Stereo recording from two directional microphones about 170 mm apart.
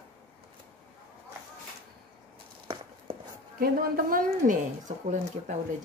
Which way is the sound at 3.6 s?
60° right (ahead or behind).